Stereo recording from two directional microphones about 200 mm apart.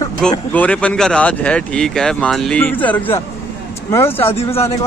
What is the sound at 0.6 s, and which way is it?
Speech, 5° left (ahead or behind).